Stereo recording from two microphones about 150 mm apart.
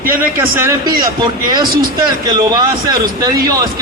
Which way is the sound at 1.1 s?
30° right (ahead or behind).